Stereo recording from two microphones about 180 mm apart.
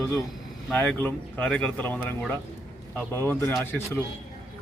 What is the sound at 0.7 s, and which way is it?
Speech, 5° left (ahead or behind).